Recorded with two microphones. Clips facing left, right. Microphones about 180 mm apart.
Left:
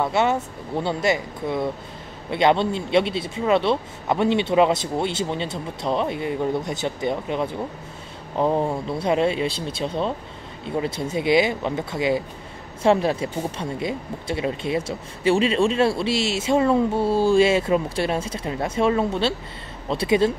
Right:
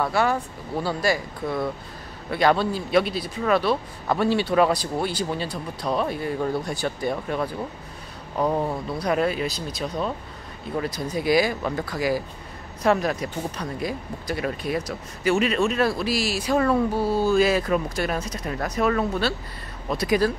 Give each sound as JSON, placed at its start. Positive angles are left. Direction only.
{"t": 0.0, "sound": "speech", "side_deg": 25}